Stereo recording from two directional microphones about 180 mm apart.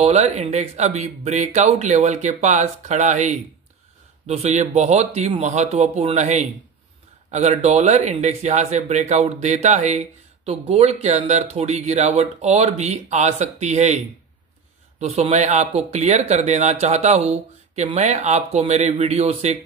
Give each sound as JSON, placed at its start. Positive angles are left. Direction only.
{"t": 0.0, "sound": "speech", "side_deg": -35}
{"t": 15.0, "sound": "speech", "side_deg": -35}